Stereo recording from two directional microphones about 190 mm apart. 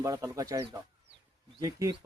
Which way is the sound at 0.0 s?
15° right (ahead or behind).